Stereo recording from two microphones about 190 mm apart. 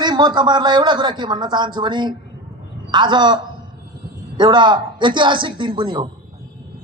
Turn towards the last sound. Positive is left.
turn(degrees=-25)  # may be behind; listen again after turning